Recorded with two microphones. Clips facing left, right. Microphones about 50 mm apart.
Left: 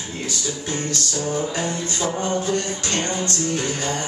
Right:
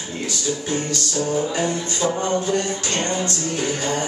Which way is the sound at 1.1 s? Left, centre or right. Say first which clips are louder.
Right 4 dB; centre.